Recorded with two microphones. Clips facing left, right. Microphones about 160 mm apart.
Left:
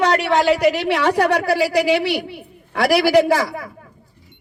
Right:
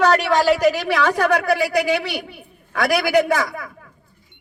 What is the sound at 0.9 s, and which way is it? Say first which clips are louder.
A man's voice: left 1 dB; 30° left (ahead or behind).